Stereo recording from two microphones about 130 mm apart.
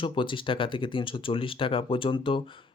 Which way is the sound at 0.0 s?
40° left (ahead or behind).